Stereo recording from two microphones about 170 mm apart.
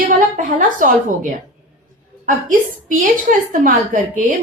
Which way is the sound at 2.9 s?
50° right (ahead or behind).